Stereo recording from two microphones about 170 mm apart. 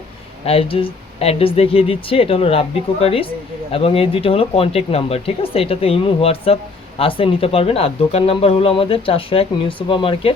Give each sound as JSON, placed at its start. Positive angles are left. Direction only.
{"t": 0.4, "sound": "speech", "side_deg": 35}